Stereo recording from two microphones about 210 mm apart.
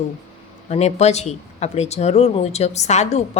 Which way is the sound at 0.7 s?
30° left (ahead or behind).